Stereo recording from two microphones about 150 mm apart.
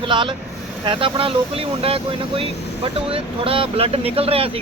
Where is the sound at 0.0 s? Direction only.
35° right (ahead or behind).